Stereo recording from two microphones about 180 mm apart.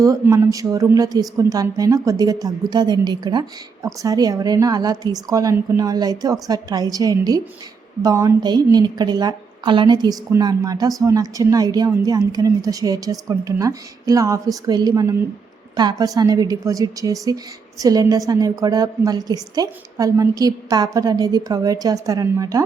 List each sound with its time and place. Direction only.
0.0 s a woman's voice: 15° right (ahead or behind)